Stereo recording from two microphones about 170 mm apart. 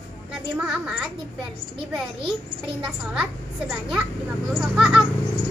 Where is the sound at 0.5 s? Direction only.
5° right (ahead or behind).